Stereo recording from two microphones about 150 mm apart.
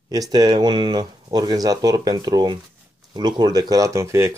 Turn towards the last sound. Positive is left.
turn(degrees=-20)  # may be behind; listen again after turning